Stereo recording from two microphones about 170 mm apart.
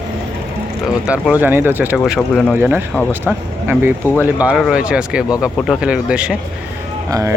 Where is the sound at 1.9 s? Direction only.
Centre (ahead or behind).